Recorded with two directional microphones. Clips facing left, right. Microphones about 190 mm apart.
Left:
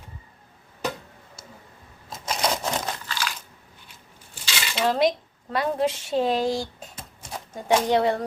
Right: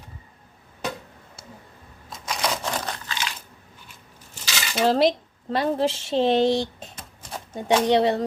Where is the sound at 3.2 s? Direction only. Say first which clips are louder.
Left 1 dB; 20° right (ahead or behind).